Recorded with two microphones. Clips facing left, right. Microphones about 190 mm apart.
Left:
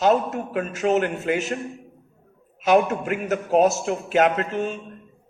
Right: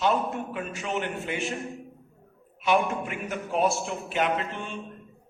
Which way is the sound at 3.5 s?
40° left (ahead or behind).